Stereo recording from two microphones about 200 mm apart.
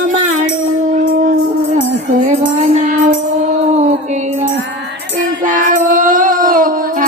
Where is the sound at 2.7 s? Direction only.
40° right (ahead or behind).